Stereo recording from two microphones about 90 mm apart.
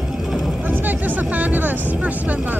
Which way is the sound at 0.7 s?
20° right (ahead or behind).